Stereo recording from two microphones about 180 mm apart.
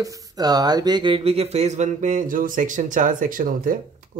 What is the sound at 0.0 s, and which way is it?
Speech, 20° right (ahead or behind).